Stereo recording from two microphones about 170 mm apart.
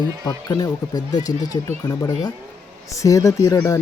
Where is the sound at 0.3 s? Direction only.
25° left (ahead or behind).